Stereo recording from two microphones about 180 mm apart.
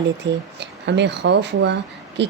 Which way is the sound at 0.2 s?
80° right.